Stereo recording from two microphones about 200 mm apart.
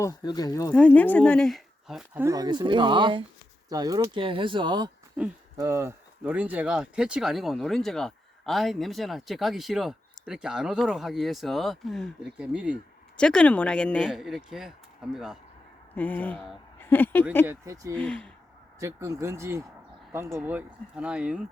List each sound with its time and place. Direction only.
0.0 s speech: 20° left (ahead or behind); by 2.2 s centre (ahead or behind)
2.2 s speech: 20° right (ahead or behind)
13.1 s speech: 5° left (ahead or behind)
17.4 s speech: 15° right (ahead or behind)
17.9 s speech: 5° left (ahead or behind)
18.8 s speech: 15° right (ahead or behind)